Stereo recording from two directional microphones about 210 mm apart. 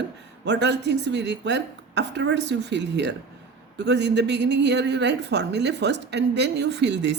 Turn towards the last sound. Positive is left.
turn(degrees=-55)  # may be behind; listen again after turning